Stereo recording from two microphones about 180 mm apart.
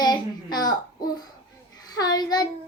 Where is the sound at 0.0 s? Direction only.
20° left (ahead or behind).